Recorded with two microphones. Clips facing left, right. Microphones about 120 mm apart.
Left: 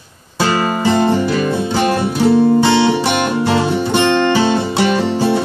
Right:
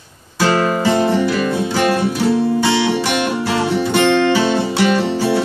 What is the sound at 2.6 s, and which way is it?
Music, 55° left (ahead or behind).